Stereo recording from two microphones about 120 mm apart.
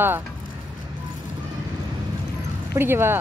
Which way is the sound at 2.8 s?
20° right (ahead or behind).